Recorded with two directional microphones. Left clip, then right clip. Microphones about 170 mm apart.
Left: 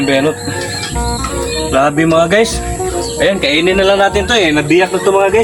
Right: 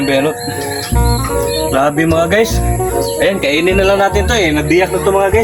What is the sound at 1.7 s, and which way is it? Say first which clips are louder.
Speech: left 3 dB; 5° right (ahead or behind).